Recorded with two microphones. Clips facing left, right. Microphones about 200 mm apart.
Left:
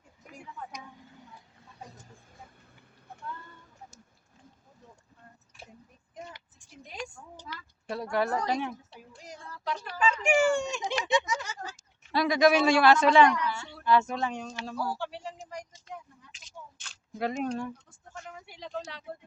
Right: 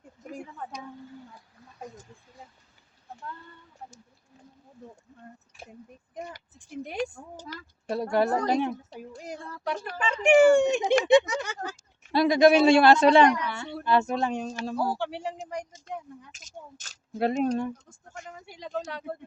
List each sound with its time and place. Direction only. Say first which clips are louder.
6.6 s speech: right 10 dB; 60° right (ahead or behind)
7.4 s a sound: right 4 dB; 40° right (ahead or behind)
8.0 s speech: right 4 dB; 30° right (ahead or behind)
8.3 s a woman's voice: right 5 dB; 50° right (ahead or behind)
12.1 s speech: right 4 dB; 25° right (ahead or behind)
13.5 s a sound: right 2 dB; 60° right (ahead or behind)
13.8 s speech: right 1 dB; 30° right (ahead or behind)
14.9 s speech: right 5 dB; 65° right (ahead or behind)
15.4 s a sound: right 6 dB; 60° right (ahead or behind)
16.3 s a sound: right 3 dB; 45° right (ahead or behind)
17.2 s speech: right 6 dB; 30° right (ahead or behind)
18.4 s speech: right 5 dB; 50° right (ahead or behind)